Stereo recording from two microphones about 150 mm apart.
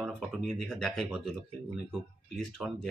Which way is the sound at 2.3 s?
Centre (ahead or behind).